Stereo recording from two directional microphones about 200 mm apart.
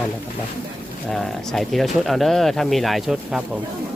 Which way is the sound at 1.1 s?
Centre (ahead or behind).